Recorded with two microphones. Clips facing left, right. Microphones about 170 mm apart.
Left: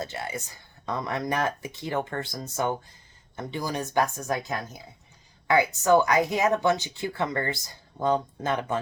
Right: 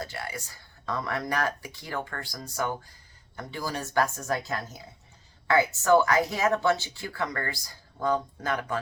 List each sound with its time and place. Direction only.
0.0 s speech: 20° left (ahead or behind)